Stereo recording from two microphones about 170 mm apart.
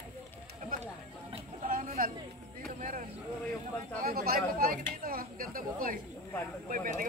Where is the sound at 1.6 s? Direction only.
55° right (ahead or behind).